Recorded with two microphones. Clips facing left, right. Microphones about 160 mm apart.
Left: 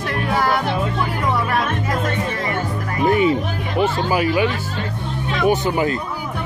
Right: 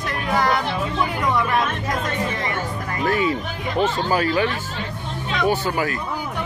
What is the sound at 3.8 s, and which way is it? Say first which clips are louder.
Speech: left 2 dB; 10° left (ahead or behind).